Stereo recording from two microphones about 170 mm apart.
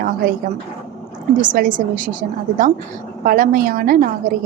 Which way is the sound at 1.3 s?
50° right (ahead or behind).